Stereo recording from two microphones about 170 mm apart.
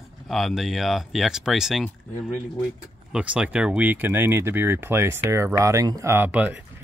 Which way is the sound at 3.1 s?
5° right (ahead or behind).